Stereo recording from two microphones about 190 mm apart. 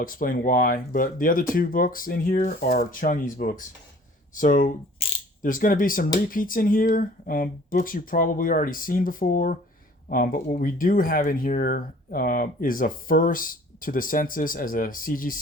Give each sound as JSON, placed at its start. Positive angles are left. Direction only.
{"t": 0.0, "sound": "speech", "side_deg": 45}